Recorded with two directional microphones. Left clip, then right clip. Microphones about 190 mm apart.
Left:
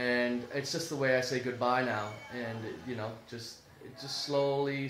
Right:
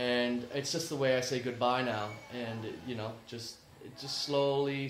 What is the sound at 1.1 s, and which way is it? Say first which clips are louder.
Speech: left 3 dB; 20° right (ahead or behind).